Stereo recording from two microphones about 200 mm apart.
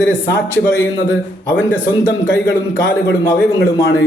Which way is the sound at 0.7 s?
70° left (ahead or behind).